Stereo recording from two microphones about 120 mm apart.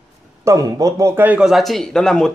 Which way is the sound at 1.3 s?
Centre (ahead or behind).